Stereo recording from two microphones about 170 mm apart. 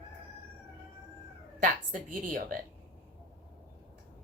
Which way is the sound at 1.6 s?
50° right (ahead or behind).